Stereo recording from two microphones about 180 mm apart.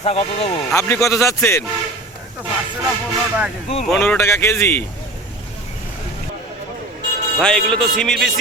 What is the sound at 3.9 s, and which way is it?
Speech, 10° left (ahead or behind).